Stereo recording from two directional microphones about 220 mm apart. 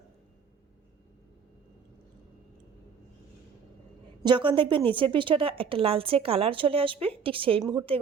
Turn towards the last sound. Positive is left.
turn(degrees=-20)  # may be behind; listen again after turning